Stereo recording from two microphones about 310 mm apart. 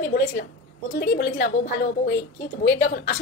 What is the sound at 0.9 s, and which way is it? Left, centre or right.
A woman's voice, left.